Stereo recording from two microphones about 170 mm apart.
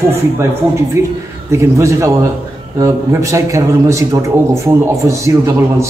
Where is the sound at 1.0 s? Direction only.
15° right (ahead or behind).